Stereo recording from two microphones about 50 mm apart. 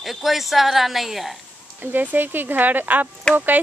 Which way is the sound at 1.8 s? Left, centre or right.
Right.